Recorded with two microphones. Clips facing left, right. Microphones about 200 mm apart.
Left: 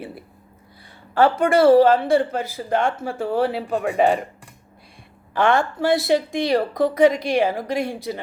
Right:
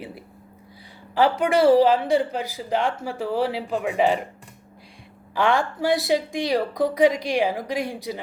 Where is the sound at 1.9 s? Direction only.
15° right (ahead or behind).